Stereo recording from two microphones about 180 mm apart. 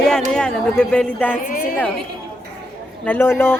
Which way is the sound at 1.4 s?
50° left (ahead or behind).